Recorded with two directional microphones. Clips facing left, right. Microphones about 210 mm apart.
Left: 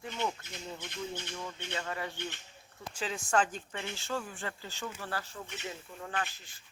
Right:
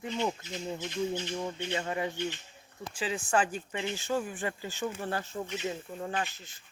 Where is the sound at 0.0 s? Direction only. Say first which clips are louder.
Right 4 dB; 15° right (ahead or behind).